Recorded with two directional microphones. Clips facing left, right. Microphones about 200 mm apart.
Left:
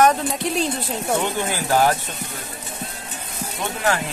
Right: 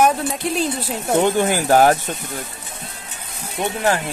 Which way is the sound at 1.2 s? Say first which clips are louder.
Right 7 dB; 50° right (ahead or behind).